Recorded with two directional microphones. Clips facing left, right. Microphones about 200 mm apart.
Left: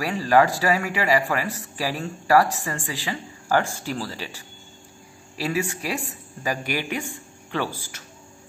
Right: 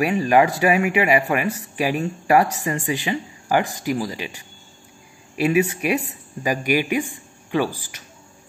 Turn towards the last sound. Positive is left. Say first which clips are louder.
# right 6 dB
turn(degrees=-15)  # may be behind; listen again after turning